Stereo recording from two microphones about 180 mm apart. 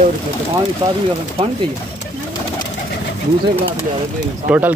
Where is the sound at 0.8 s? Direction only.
25° right (ahead or behind).